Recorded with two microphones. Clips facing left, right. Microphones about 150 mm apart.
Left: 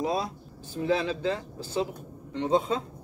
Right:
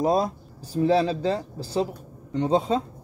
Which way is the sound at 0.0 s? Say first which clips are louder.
Right 7 dB; 45° right (ahead or behind).